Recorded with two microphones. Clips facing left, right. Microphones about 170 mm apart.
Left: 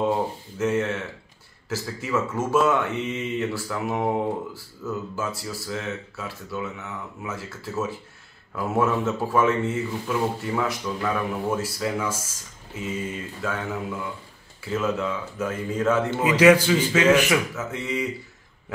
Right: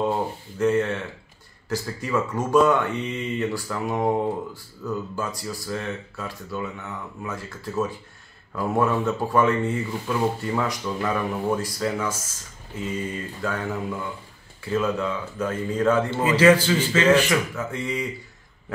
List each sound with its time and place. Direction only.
0.6 s a man's voice: 5° left (ahead or behind)